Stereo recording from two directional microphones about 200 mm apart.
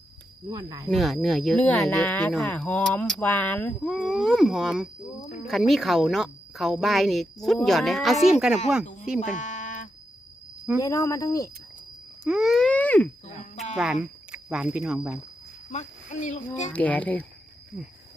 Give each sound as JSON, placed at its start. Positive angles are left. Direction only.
{"t": 0.4, "sound": "speech", "side_deg": -20}
{"t": 0.9, "sound": "speech", "side_deg": 0}
{"t": 9.2, "sound": "a sound", "side_deg": 40}
{"t": 10.8, "sound": "speech", "side_deg": 15}
{"t": 12.2, "sound": "wail", "side_deg": 0}
{"t": 13.2, "sound": "cricket", "side_deg": 35}
{"t": 13.7, "sound": "speech", "side_deg": -5}
{"t": 15.7, "sound": "speech", "side_deg": 35}
{"t": 16.7, "sound": "speech", "side_deg": 5}